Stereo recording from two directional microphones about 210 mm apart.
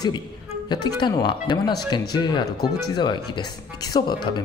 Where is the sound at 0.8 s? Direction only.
20° left (ahead or behind).